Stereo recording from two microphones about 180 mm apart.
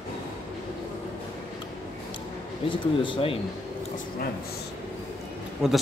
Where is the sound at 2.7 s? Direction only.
25° left (ahead or behind).